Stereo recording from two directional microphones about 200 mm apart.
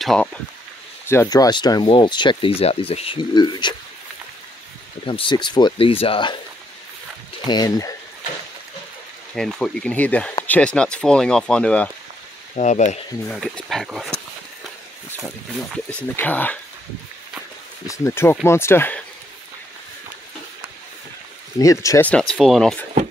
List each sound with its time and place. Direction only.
0.0 s speech: 5° left (ahead or behind); by 3.7 s 20° left (ahead or behind)
5.0 s speech: 25° left (ahead or behind)
7.4 s speech: 20° left (ahead or behind)
9.3 s speech: 5° left (ahead or behind)
12.5 s speech: 35° left (ahead or behind)
13.3 s speech: 5° left (ahead or behind)
16.0 s speech: 10° left (ahead or behind)
17.8 s speech: 15° left (ahead or behind)
21.5 s speech: 15° left (ahead or behind)